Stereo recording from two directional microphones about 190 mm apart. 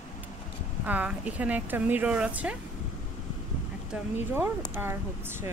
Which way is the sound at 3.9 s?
10° right (ahead or behind).